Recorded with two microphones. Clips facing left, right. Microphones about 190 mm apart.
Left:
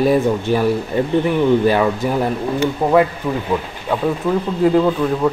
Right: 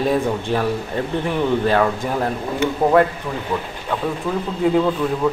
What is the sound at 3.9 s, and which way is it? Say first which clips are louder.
Speech: left 4 dB; 10° left (ahead or behind).